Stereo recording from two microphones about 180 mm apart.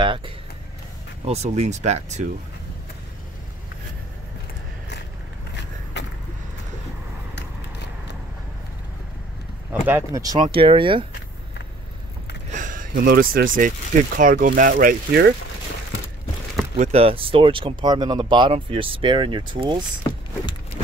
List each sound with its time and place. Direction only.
0.0 s speech: 25° right (ahead or behind)
9.7 s speech: 10° right (ahead or behind); by 11.1 s 30° right (ahead or behind)
12.5 s a sound: 45° right (ahead or behind)
12.9 s speech: 55° right (ahead or behind)
16.7 s speech: 35° right (ahead or behind)